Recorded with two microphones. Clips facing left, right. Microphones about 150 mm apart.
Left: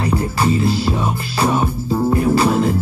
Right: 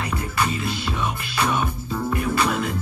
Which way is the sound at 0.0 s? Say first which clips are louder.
Left 7 dB; 30° left (ahead or behind).